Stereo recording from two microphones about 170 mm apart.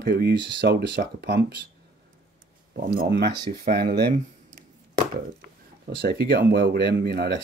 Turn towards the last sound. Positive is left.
turn(degrees=-70)  # may be behind; listen again after turning